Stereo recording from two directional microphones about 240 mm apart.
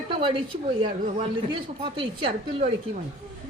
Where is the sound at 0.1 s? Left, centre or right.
Right.